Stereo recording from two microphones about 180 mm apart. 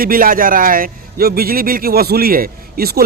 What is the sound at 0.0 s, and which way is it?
A man's voice, 50° right (ahead or behind).